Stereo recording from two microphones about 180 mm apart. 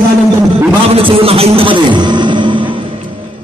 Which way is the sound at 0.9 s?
30° right (ahead or behind).